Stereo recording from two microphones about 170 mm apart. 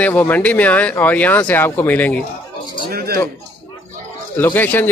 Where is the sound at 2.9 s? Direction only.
65° right (ahead or behind).